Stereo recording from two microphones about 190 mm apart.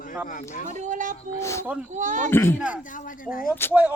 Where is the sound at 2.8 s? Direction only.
45° left (ahead or behind).